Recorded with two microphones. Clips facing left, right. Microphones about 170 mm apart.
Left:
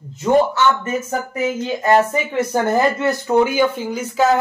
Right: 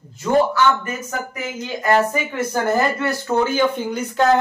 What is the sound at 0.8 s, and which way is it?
A man's voice, 25° left (ahead or behind).